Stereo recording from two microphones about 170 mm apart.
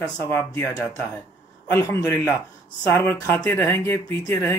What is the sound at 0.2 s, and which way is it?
Speech, 15° left (ahead or behind).